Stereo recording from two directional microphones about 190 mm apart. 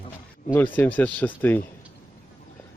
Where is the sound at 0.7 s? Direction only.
10° left (ahead or behind).